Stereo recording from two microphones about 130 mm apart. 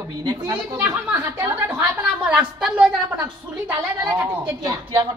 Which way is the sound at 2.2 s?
10° right (ahead or behind).